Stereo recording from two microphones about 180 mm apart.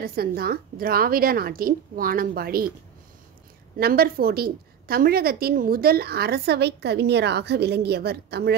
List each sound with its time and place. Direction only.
0.0 s a woman's voice: 55° right (ahead or behind)
3.7 s a woman's voice: 55° right (ahead or behind)